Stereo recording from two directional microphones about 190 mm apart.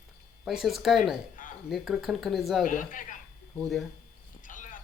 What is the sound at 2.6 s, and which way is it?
Speech, 45° left (ahead or behind).